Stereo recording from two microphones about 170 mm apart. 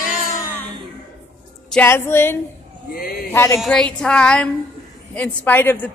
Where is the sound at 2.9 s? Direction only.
60° left (ahead or behind).